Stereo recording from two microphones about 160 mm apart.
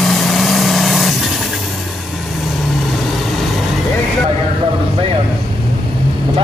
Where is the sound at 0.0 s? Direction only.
Centre (ahead or behind).